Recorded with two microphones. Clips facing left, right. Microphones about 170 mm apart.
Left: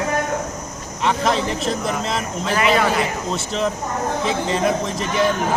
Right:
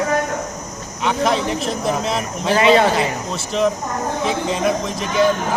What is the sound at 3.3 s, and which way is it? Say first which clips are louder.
Speech: right 6 dB; centre (ahead or behind).